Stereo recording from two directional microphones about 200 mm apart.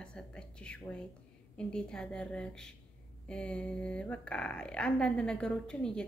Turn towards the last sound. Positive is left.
turn(degrees=5)  # may be behind; listen again after turning